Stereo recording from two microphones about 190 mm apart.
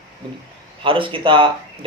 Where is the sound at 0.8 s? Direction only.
25° right (ahead or behind).